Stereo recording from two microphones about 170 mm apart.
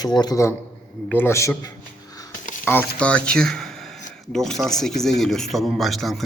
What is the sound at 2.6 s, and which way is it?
Speech, 10° left (ahead or behind).